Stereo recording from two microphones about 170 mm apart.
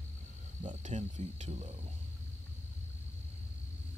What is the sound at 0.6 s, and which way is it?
Cricket, 45° right (ahead or behind).